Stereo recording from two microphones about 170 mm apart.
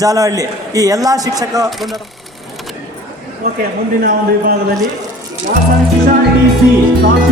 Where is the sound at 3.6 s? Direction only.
60° right (ahead or behind).